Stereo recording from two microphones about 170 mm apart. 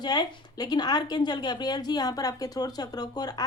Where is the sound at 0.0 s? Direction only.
25° left (ahead or behind).